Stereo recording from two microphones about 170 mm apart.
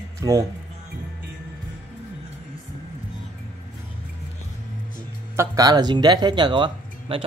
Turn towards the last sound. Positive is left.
turn(degrees=-30)  # may be behind; listen again after turning